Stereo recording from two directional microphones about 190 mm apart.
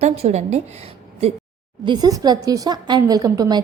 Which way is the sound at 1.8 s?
20° right (ahead or behind).